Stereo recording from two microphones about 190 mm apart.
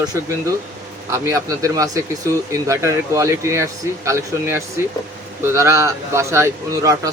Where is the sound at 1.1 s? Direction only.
15° right (ahead or behind).